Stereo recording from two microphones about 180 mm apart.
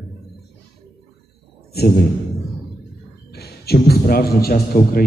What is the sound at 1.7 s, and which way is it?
Speech, 60° left (ahead or behind).